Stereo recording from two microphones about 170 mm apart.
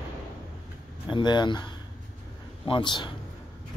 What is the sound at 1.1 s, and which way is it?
Speech, 25° left (ahead or behind).